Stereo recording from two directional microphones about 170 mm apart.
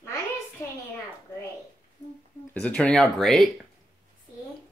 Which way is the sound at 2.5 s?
5° left (ahead or behind).